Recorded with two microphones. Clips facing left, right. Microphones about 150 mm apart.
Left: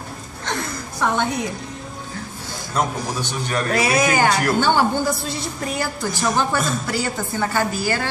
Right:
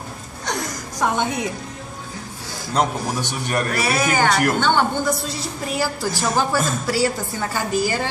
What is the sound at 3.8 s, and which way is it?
A woman's voice, 15° left (ahead or behind).